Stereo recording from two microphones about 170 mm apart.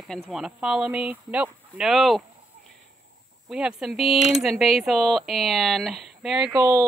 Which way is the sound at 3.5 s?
5° right (ahead or behind).